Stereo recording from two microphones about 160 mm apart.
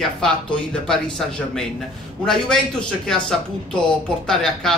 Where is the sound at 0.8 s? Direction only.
5° left (ahead or behind).